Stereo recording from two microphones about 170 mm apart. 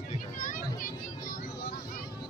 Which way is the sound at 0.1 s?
50° left (ahead or behind).